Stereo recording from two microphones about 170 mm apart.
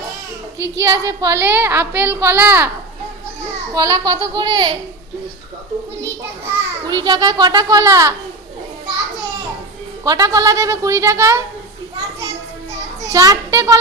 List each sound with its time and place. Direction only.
0.6 s speech: 15° right (ahead or behind)
3.8 s a woman's voice: 20° right (ahead or behind)
6.8 s a woman's voice: 25° right (ahead or behind)
10.0 s a woman's voice: 20° right (ahead or behind)
13.1 s a child's voice: 20° right (ahead or behind)